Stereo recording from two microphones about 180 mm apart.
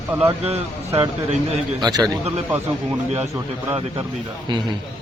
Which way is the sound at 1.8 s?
20° right (ahead or behind).